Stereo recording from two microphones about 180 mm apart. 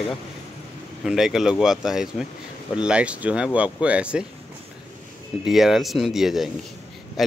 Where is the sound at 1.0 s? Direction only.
Centre (ahead or behind).